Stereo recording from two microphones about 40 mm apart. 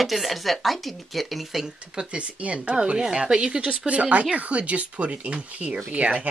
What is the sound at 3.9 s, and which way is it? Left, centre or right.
Speech, right.